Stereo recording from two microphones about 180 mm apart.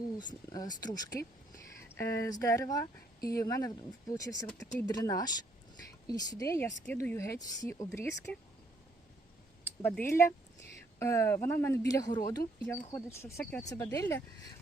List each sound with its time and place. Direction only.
0.5 s speech: 20° left (ahead or behind)
9.6 s speech: 10° left (ahead or behind)
13.7 s speech: 20° left (ahead or behind)